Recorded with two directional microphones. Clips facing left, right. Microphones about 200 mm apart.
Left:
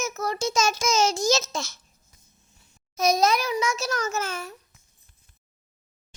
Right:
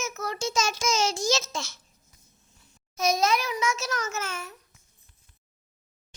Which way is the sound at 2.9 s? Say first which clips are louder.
Left 3 dB; 35° left (ahead or behind).